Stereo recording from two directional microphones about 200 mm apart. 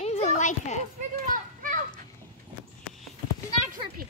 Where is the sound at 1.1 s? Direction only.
45° right (ahead or behind).